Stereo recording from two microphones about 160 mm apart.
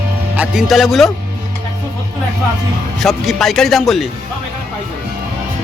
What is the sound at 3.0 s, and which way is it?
A man's voice, centre (ahead or behind).